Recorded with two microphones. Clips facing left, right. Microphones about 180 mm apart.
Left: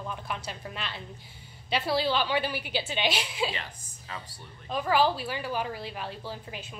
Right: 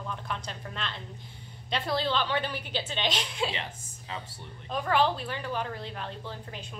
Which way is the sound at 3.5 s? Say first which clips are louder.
Right 2 dB; 20° right (ahead or behind).